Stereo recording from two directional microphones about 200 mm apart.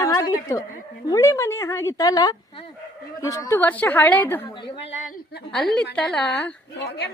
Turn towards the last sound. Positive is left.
turn(degrees=55)  # may be behind; listen again after turning